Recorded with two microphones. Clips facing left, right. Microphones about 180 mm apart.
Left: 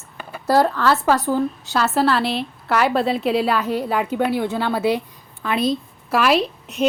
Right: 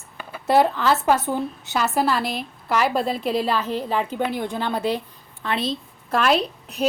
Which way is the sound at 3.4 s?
10° left (ahead or behind).